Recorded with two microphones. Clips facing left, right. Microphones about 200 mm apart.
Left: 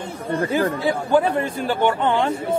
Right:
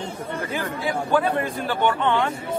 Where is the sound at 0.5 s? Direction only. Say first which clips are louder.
Left 6 dB; 30° left (ahead or behind).